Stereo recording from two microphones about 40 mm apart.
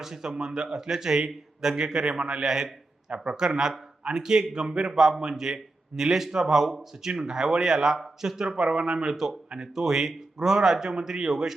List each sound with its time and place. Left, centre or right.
0.0 s speech: centre
9.1 s speech: centre